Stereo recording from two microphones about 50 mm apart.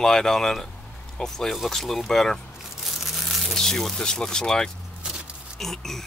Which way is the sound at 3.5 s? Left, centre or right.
Centre.